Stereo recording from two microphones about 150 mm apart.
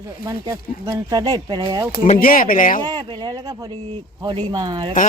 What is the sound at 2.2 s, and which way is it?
Speech, 70° left (ahead or behind).